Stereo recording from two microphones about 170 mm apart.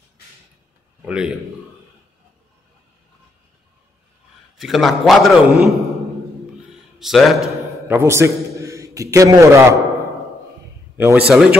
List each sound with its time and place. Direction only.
1.0 s a man's voice: 5° right (ahead or behind)
4.6 s a man's voice: centre (ahead or behind)
7.0 s a man's voice: centre (ahead or behind)
7.9 s a man's voice: 15° right (ahead or behind)
11.0 s a man's voice: 10° right (ahead or behind)